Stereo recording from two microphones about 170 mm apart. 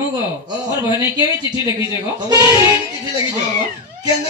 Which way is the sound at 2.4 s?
20° right (ahead or behind).